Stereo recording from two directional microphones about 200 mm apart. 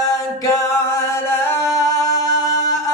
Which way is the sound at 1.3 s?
15° left (ahead or behind).